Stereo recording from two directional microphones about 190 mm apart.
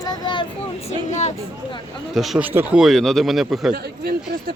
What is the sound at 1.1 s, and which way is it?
Speech, 35° left (ahead or behind).